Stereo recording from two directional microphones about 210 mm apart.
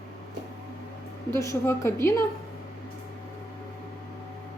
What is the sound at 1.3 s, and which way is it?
Speech, 15° left (ahead or behind).